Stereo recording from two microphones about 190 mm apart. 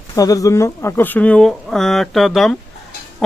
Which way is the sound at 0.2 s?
20° left (ahead or behind).